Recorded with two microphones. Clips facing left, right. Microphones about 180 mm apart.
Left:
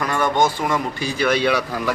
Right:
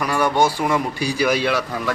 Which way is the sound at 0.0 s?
10° right (ahead or behind).